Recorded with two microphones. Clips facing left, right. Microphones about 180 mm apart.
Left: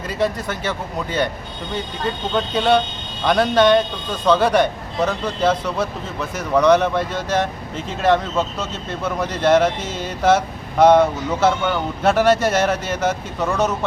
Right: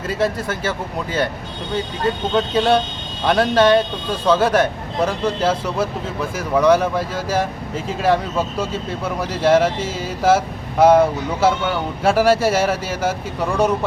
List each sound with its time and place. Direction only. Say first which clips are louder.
0.4 s speech: right 1 dB; 5° right (ahead or behind)
2.3 s speech: even; 5° right (ahead or behind)